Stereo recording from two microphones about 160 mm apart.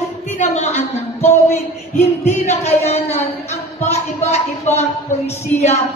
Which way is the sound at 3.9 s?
40° left (ahead or behind).